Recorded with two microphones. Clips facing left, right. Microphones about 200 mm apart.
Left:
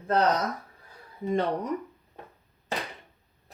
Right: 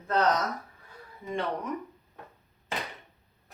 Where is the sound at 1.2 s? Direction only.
35° left (ahead or behind).